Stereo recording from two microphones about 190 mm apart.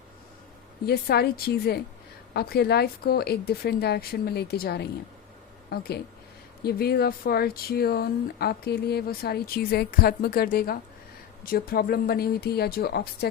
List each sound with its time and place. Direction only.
0.9 s speech: 55° left (ahead or behind)